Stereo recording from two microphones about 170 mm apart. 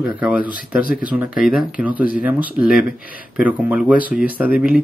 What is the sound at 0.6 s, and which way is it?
Speech, 55° left (ahead or behind).